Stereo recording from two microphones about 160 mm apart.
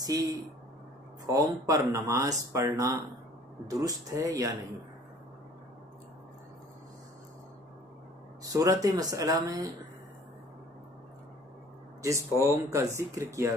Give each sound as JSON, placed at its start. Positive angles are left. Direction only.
{"t": 0.0, "sound": "speech", "side_deg": -25}
{"t": 8.5, "sound": "speech", "side_deg": -20}
{"t": 12.0, "sound": "speech", "side_deg": -20}